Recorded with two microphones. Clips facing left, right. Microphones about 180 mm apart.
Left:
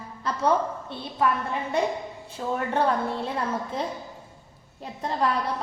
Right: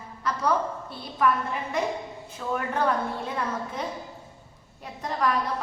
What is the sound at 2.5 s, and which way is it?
Speech, 30° left (ahead or behind).